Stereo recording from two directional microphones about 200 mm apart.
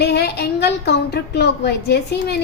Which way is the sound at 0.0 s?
55° left (ahead or behind).